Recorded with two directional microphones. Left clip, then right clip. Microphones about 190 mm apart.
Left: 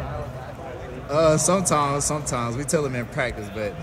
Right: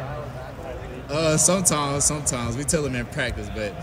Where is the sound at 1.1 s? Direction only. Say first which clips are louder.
Left 3 dB; 30° right (ahead or behind).